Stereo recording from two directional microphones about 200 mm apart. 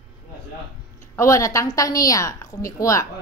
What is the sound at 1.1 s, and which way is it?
A woman's voice, 15° left (ahead or behind).